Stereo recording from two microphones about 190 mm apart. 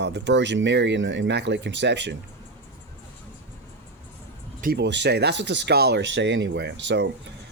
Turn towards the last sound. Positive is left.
turn(degrees=-65)  # may be behind; listen again after turning